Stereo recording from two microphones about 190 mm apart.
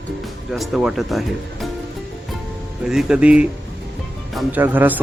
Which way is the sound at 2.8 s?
5° right (ahead or behind).